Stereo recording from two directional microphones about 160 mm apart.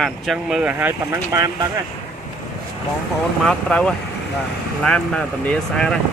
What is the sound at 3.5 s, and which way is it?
Speech, 5° left (ahead or behind).